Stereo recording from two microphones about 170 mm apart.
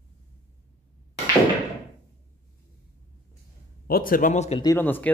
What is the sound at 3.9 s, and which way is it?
Speech, 55° left (ahead or behind).